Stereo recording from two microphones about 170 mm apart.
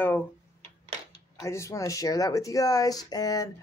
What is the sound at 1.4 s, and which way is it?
Speech, 15° left (ahead or behind).